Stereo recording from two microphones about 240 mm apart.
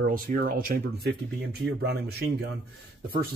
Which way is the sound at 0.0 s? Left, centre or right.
Right.